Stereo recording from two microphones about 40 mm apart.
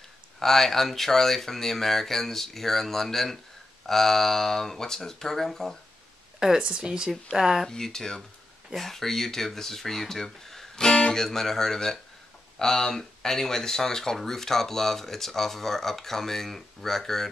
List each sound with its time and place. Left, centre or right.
0.4 s speech: centre
6.6 s speech: centre
7.6 s speech: centre
10.9 s guitar: centre
11.2 s speech: centre